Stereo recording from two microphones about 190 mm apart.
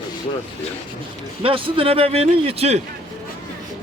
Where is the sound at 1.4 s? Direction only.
30° right (ahead or behind).